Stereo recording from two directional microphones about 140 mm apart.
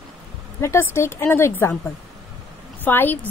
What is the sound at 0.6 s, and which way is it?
A woman's voice, 20° left (ahead or behind).